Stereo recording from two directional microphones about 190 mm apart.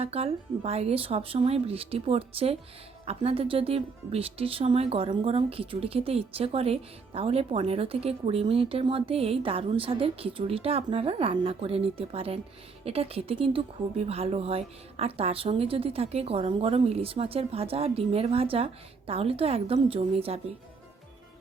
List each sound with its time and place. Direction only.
0.0 s speech: 30° right (ahead or behind)